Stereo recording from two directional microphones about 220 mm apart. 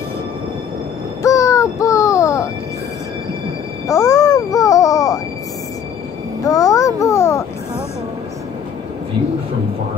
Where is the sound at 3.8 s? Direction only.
15° left (ahead or behind).